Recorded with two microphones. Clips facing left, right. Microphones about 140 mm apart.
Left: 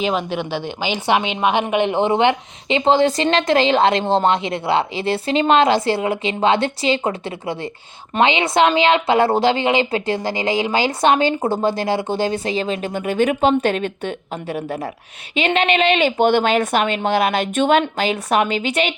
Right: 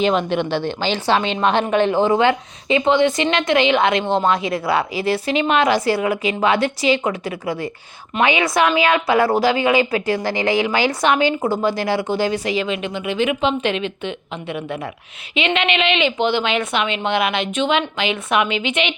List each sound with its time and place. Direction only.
0.0 s a woman's voice: 5° left (ahead or behind); by 18.9 s 40° left (ahead or behind)